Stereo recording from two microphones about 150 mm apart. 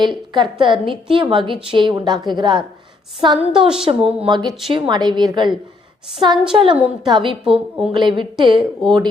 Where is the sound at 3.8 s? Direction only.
35° right (ahead or behind).